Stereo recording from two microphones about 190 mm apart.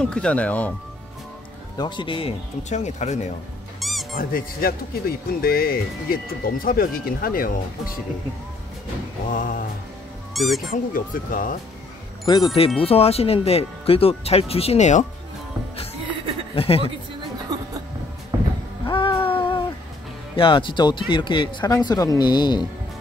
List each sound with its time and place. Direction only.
0.0 s speech: 5° left (ahead or behind)
1.8 s speech: 25° left (ahead or behind)
3.8 s music: centre (ahead or behind)
4.2 s speech: 50° left (ahead or behind)
9.3 s speech: 45° left (ahead or behind)
10.3 s speech: centre (ahead or behind)
10.7 s speech: 45° left (ahead or behind)
12.5 s speech: 30° left (ahead or behind)
16.5 s speech: 30° left (ahead or behind)
18.9 s music: 25° left (ahead or behind)
20.3 s speech: 25° left (ahead or behind)